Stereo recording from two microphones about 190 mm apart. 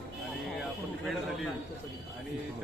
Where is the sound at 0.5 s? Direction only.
Centre (ahead or behind).